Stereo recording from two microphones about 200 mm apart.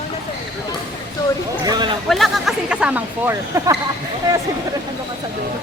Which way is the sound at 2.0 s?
Centre (ahead or behind).